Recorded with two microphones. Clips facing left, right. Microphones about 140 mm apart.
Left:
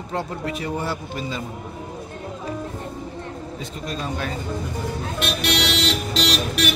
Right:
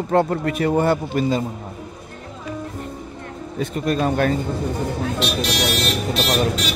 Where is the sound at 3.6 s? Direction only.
55° right (ahead or behind).